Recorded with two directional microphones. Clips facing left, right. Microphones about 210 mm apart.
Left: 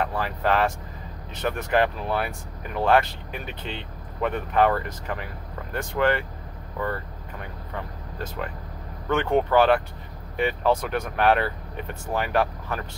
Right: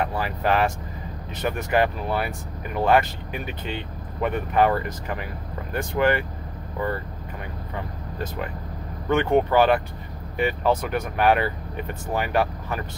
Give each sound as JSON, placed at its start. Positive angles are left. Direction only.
{"t": 0.0, "sound": "speech", "side_deg": -10}
{"t": 9.1, "sound": "speech", "side_deg": -5}